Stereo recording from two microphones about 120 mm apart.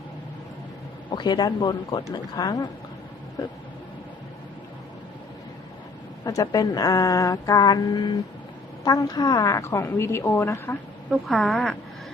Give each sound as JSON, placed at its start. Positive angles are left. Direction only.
{"t": 1.1, "sound": "speech", "side_deg": 40}
{"t": 6.2, "sound": "a woman's voice", "side_deg": 30}
{"t": 11.1, "sound": "speech", "side_deg": 0}